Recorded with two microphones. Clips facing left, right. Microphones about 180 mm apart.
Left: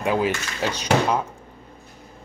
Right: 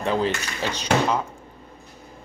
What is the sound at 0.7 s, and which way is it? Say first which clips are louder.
Speech: left 1 dB; 10° left (ahead or behind).